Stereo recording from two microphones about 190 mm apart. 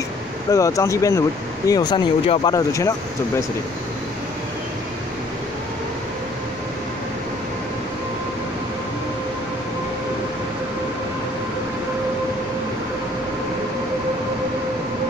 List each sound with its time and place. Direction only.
0.5 s speech: 15° left (ahead or behind)